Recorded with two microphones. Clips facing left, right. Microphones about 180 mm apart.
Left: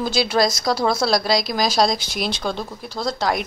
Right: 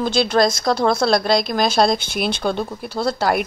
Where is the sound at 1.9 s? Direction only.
55° right (ahead or behind).